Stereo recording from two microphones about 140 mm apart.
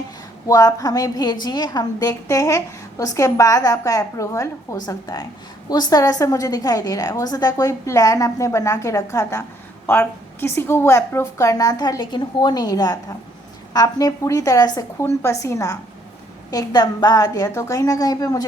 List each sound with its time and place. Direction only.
0.4 s a woman's voice: 25° left (ahead or behind)